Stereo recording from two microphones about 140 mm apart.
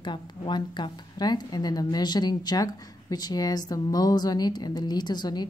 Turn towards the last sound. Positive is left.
turn(degrees=30)  # may be behind; listen again after turning